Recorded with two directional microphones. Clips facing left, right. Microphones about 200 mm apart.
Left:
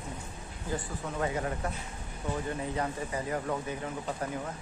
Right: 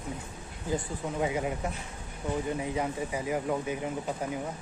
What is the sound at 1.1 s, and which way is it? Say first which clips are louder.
A man's voice: right 2 dB; 10° right (ahead or behind).